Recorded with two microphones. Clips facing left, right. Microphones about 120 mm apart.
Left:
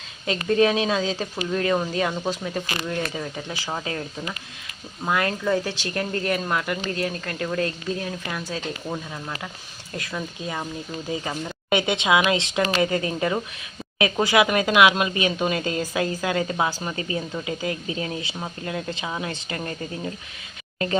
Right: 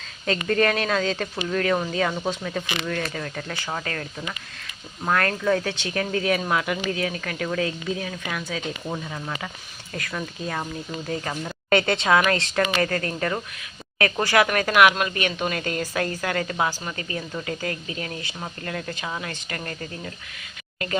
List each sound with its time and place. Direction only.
0.3 s a woman's voice: 5° left (ahead or behind)
5.0 s a woman's voice: 5° left (ahead or behind)
5.6 s speech: 60° right (ahead or behind)
5.9 s a woman's voice: centre (ahead or behind); by 21.0 s 25° left (ahead or behind)